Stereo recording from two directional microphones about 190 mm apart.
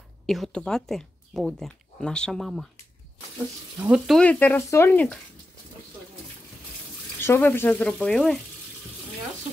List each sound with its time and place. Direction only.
0.3 s speech: 5° left (ahead or behind)
3.7 s speech: 5° right (ahead or behind)
7.2 s speech: 10° left (ahead or behind)